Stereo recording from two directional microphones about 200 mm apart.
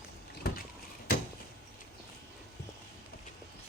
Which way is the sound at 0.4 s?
50° left (ahead or behind).